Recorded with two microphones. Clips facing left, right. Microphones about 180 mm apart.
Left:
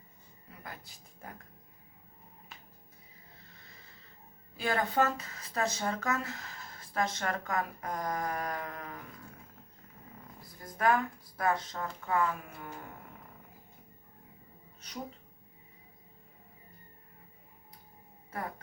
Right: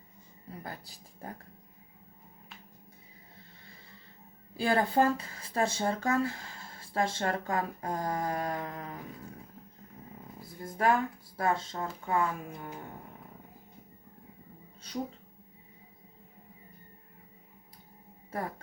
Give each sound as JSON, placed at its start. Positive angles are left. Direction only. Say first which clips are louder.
{"t": 0.6, "sound": "speech", "louder": "right 2 dB", "side_deg": -35}
{"t": 4.5, "sound": "speech", "louder": "right 3 dB", "side_deg": -30}
{"t": 10.4, "sound": "speech", "louder": "right 1 dB", "side_deg": -25}